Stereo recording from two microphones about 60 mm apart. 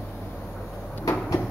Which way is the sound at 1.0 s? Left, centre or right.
Left.